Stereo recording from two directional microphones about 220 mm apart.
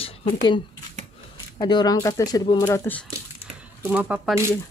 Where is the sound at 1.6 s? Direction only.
20° left (ahead or behind).